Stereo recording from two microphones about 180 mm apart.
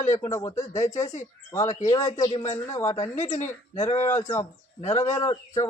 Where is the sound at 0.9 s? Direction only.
40° left (ahead or behind).